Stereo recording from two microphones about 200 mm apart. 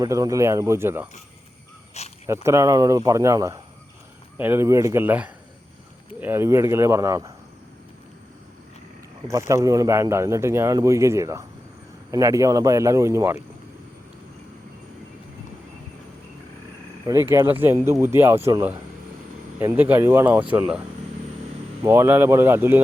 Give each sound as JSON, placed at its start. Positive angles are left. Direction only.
{"t": 0.0, "sound": "speech", "side_deg": -15}
{"t": 2.2, "sound": "speech", "side_deg": -15}
{"t": 9.5, "sound": "speech", "side_deg": -15}
{"t": 17.1, "sound": "speech", "side_deg": -15}
{"t": 21.8, "sound": "speech", "side_deg": -10}